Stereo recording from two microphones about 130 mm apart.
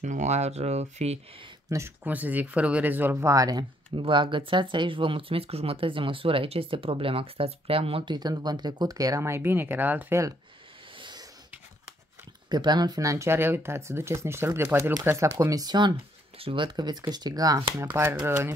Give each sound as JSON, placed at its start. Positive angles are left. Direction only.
{"t": 0.0, "sound": "speech", "side_deg": -65}
{"t": 1.7, "sound": "speech", "side_deg": -15}
{"t": 11.0, "sound": "a sound", "side_deg": -35}
{"t": 12.4, "sound": "speech", "side_deg": -35}
{"t": 16.3, "sound": "speech", "side_deg": -40}
{"t": 17.8, "sound": "speech", "side_deg": -15}